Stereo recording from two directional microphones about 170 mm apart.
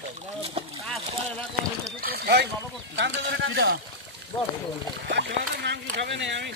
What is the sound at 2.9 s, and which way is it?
Speech, 90° right.